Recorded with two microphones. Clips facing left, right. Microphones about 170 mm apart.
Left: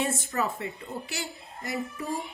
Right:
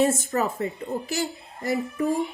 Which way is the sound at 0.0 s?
40° right (ahead or behind).